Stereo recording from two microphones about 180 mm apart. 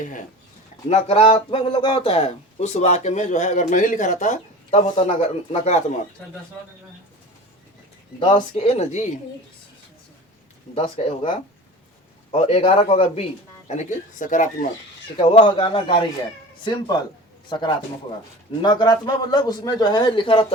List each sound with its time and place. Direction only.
0.9 s speech: 35° left (ahead or behind)
8.4 s speech: 40° left (ahead or behind)
10.8 s speech: 35° left (ahead or behind)
14.2 s speech: 45° left (ahead or behind)
15.2 s a man's voice: 30° left (ahead or behind)